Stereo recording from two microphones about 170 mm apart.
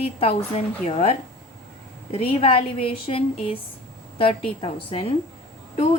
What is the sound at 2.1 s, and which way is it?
A woman's voice, 35° left (ahead or behind).